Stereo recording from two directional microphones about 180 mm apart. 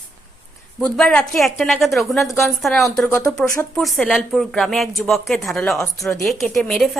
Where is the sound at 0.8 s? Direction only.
5° left (ahead or behind).